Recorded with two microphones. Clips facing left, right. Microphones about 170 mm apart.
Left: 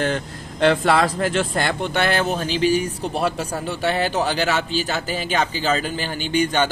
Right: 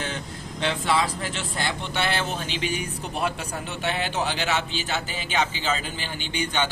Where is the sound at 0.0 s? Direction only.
55° left (ahead or behind).